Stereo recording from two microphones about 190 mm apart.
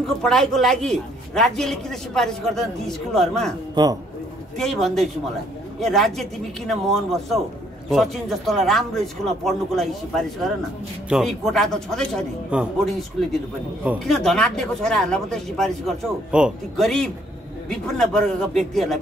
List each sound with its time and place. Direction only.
0.2 s a man's voice: 5° left (ahead or behind)
3.8 s speech: 20° right (ahead or behind)
4.6 s a man's voice: centre (ahead or behind)